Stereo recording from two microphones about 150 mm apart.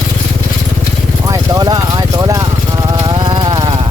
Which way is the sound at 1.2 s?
25° right (ahead or behind).